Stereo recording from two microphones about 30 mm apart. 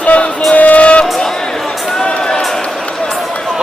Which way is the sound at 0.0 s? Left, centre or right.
Left.